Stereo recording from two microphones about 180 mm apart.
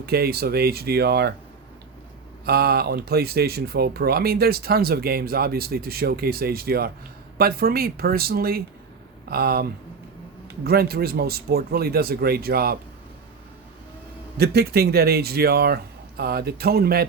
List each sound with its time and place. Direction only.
0.0 s speech: 60° right (ahead or behind)
2.5 s speech: 60° right (ahead or behind)
14.3 s speech: 60° right (ahead or behind)